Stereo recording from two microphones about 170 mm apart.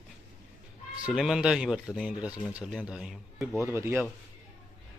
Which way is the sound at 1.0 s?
5° right (ahead or behind).